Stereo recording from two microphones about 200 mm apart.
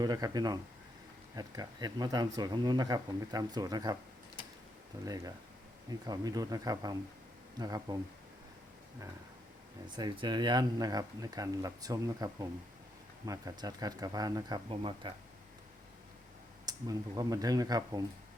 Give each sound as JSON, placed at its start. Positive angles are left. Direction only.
{"t": 0.0, "sound": "speech", "side_deg": -20}
{"t": 5.0, "sound": "speech", "side_deg": -20}
{"t": 9.9, "sound": "speech", "side_deg": -20}
{"t": 16.6, "sound": "speech", "side_deg": -20}